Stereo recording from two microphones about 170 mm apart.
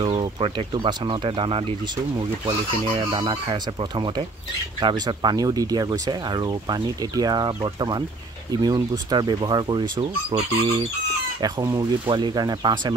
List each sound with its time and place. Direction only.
0.0 s speech: 30° right (ahead or behind)